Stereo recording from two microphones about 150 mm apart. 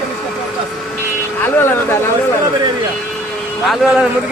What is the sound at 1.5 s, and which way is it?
Speech, 15° left (ahead or behind).